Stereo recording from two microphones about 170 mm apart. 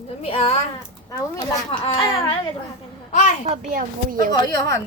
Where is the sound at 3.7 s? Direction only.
55° right (ahead or behind).